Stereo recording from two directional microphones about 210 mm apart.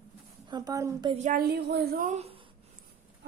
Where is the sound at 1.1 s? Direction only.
35° right (ahead or behind).